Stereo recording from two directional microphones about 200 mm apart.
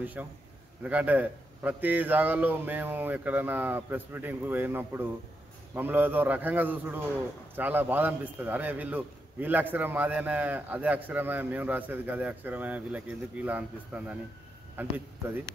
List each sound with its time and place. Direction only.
0.0 s a man's voice: 10° right (ahead or behind)